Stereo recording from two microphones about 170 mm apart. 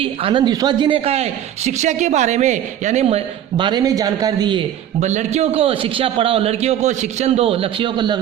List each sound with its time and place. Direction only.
0.0 s a man's voice: 30° right (ahead or behind)
4.9 s a man's voice: 45° right (ahead or behind); by 8.2 s 25° right (ahead or behind)